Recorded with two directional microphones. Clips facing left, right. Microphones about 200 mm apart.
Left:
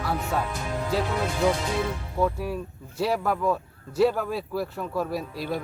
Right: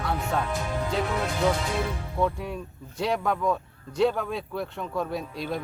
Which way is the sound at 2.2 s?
5° left (ahead or behind).